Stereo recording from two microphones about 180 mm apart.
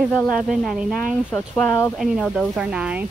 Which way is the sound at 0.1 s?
Centre (ahead or behind).